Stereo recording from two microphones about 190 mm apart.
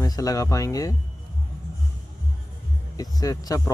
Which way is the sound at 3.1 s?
20° left (ahead or behind).